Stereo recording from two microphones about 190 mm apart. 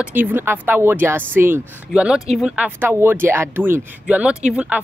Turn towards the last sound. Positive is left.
turn(degrees=-5)  # may be behind; listen again after turning